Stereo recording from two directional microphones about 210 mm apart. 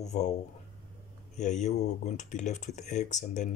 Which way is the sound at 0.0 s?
35° left (ahead or behind).